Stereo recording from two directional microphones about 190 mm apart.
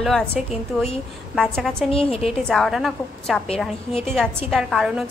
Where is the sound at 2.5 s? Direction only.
Centre (ahead or behind).